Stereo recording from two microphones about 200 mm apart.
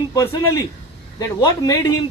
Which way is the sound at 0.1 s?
15° left (ahead or behind).